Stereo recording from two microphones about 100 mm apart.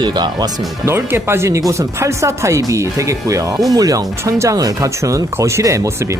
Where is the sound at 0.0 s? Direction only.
45° right (ahead or behind).